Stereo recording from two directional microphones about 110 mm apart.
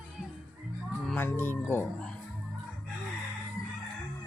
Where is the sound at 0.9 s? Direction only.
15° left (ahead or behind).